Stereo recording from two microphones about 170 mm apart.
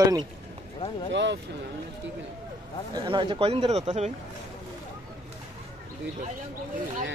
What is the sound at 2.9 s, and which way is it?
Speech, 25° right (ahead or behind).